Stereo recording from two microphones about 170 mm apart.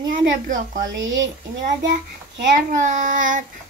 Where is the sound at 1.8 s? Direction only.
90° right.